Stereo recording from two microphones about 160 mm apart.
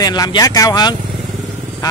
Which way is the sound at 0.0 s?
25° left (ahead or behind).